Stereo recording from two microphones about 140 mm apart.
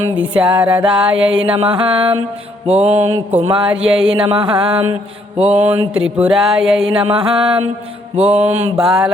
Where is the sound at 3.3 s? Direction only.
40° right (ahead or behind).